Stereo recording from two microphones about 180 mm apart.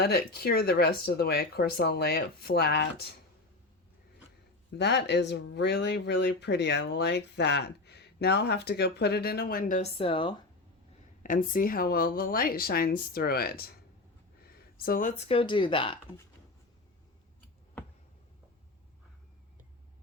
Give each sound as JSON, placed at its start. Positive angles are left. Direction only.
{"t": 0.0, "sound": "speech", "side_deg": 60}
{"t": 4.8, "sound": "speech", "side_deg": 70}
{"t": 10.0, "sound": "speech", "side_deg": 30}
{"t": 11.2, "sound": "speech", "side_deg": 50}
{"t": 14.8, "sound": "speech", "side_deg": 50}
{"t": 15.3, "sound": "speech", "side_deg": 30}